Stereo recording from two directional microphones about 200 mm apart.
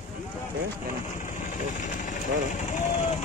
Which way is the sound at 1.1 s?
40° left (ahead or behind).